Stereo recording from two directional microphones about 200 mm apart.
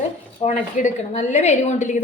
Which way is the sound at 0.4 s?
35° left (ahead or behind).